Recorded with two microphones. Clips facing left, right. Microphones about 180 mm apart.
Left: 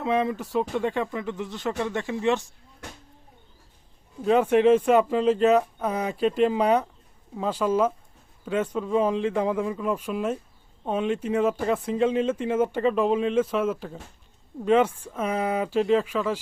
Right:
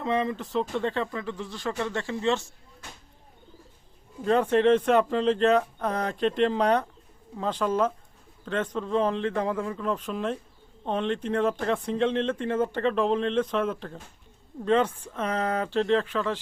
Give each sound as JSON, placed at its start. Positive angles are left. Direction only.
{"t": 0.0, "sound": "speech", "side_deg": 10}
{"t": 4.2, "sound": "speech", "side_deg": 5}